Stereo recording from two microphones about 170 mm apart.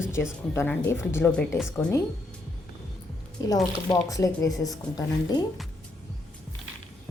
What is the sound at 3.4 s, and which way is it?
Speech, 20° left (ahead or behind).